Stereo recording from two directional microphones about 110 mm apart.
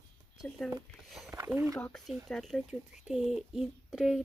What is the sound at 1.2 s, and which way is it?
Speech, 25° right (ahead or behind).